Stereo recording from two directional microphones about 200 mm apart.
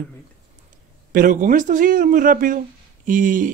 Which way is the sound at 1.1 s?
40° right (ahead or behind).